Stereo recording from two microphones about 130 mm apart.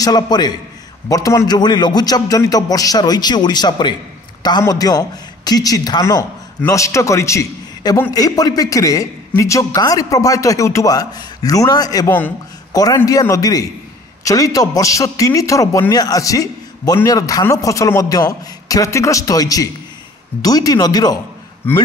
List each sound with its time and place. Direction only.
0.0 s a man's voice: 30° left (ahead or behind)
21.6 s speech: 15° left (ahead or behind)